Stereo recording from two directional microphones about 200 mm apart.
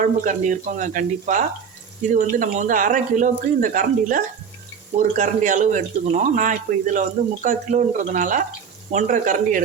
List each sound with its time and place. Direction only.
0.0 s speech: 40° right (ahead or behind)